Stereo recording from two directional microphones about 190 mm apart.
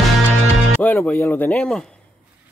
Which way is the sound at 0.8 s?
10° left (ahead or behind).